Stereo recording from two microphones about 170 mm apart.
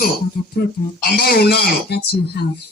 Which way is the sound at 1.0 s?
70° left (ahead or behind).